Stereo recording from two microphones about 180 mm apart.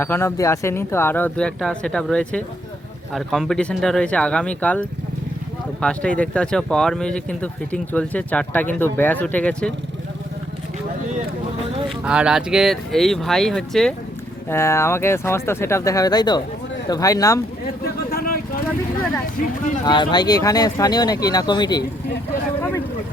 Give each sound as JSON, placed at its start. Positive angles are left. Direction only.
{"t": 0.0, "sound": "speech", "side_deg": 15}
{"t": 12.0, "sound": "speech", "side_deg": -5}
{"t": 14.5, "sound": "speech", "side_deg": 15}
{"t": 17.8, "sound": "vehicle", "side_deg": 55}
{"t": 19.8, "sound": "speech", "side_deg": 25}